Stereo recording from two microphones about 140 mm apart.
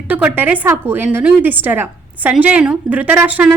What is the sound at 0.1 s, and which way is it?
A woman's voice, 10° right (ahead or behind).